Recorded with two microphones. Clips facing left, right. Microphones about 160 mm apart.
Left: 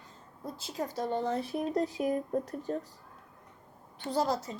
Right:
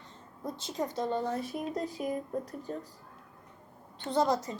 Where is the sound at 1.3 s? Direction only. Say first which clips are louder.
Left 3 dB; 30° left (ahead or behind).